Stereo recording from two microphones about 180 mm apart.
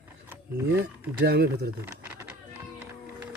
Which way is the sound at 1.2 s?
65° right (ahead or behind).